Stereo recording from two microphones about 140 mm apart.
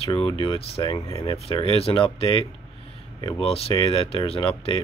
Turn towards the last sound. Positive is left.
turn(degrees=40)  # may be behind; listen again after turning